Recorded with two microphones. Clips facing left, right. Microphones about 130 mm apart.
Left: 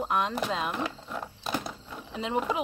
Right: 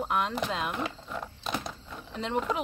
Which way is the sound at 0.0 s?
Centre (ahead or behind).